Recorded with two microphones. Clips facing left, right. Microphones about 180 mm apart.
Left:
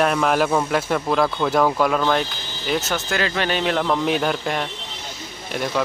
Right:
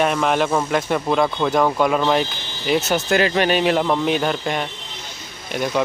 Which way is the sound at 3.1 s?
15° right (ahead or behind).